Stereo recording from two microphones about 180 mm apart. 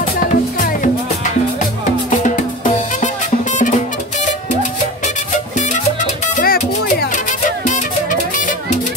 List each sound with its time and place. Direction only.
5.6 s music: 40° left (ahead or behind)